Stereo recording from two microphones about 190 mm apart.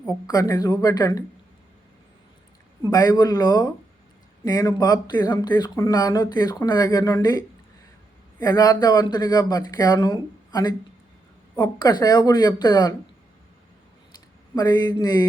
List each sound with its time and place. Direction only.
0.3 s speech: 20° left (ahead or behind)
2.9 s speech: 20° left (ahead or behind)
14.5 s speech: 20° left (ahead or behind)